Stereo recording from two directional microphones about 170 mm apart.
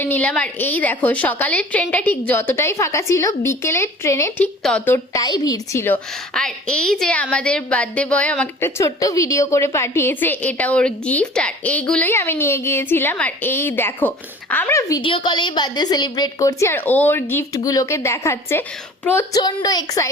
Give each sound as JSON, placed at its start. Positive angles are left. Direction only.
{"t": 0.0, "sound": "a woman's voice", "side_deg": 10}
{"t": 4.6, "sound": "a woman's voice", "side_deg": 5}
{"t": 5.1, "sound": "a woman's voice", "side_deg": 20}